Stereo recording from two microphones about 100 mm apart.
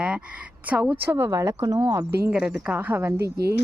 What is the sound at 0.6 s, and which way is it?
Speech, 15° right (ahead or behind).